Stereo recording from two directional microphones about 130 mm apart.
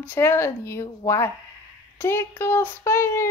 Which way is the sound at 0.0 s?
15° left (ahead or behind).